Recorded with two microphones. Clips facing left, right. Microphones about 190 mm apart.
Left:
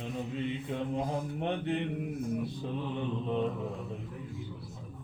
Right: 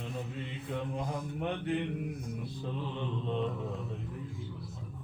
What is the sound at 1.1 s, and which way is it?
Speech, 25° left (ahead or behind).